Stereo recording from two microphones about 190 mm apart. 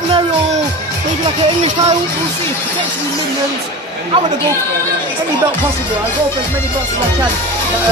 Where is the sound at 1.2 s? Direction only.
30° right (ahead or behind).